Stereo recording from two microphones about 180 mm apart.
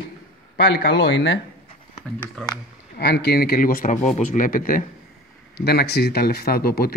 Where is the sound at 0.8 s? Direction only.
90° left.